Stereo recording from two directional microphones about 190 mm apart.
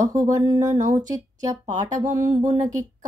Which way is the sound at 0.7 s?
40° right (ahead or behind).